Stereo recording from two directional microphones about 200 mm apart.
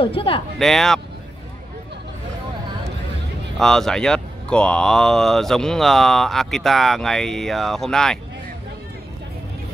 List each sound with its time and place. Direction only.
0.0 s speech: 25° left (ahead or behind)
0.6 s speech: centre (ahead or behind)
3.5 s speech: centre (ahead or behind)